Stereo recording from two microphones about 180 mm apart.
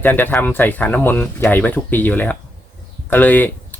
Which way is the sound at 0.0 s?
10° left (ahead or behind).